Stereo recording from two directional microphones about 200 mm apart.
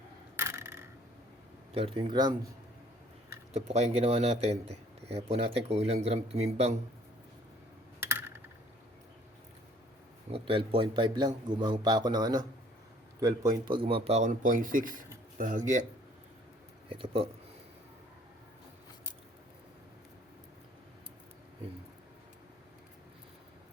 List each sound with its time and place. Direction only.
0.3 s coin: 15° right (ahead or behind)
1.7 s a man's voice: 25° right (ahead or behind)
3.5 s speech: 35° right (ahead or behind)
10.3 s a man's voice: 25° right (ahead or behind)
16.9 s a man's voice: 25° right (ahead or behind)